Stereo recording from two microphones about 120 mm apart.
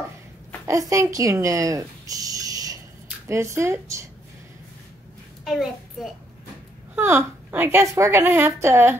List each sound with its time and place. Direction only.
0.7 s a woman's voice: 30° right (ahead or behind)
5.4 s a child's voice: centre (ahead or behind)
7.0 s a woman's voice: 20° right (ahead or behind)